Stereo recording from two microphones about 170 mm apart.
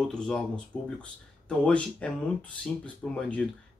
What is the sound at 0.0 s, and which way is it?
Speech, 5° left (ahead or behind).